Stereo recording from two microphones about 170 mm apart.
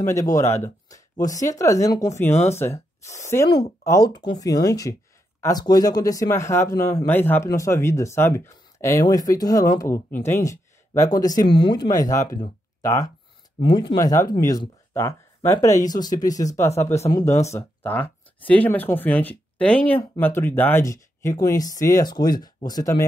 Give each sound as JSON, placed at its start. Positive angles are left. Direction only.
{"t": 0.0, "sound": "speech", "side_deg": 20}